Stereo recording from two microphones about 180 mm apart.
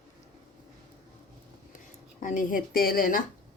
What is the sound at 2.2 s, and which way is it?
Speech, 50° left (ahead or behind).